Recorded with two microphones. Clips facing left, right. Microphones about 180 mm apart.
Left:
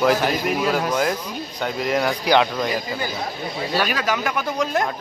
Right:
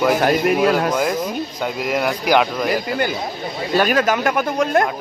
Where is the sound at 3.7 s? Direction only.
50° right (ahead or behind).